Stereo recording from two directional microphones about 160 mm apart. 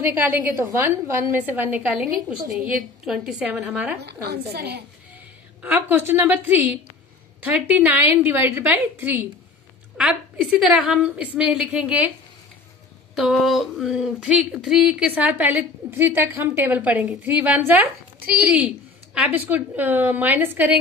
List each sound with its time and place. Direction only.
0.0 s a woman's voice: 10° right (ahead or behind)
4.0 s a woman's voice: 85° right
5.6 s speech: 10° right (ahead or behind)
13.1 s speech: centre (ahead or behind)